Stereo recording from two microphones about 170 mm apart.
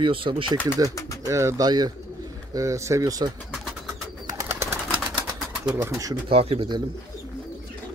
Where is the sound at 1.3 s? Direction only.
15° right (ahead or behind).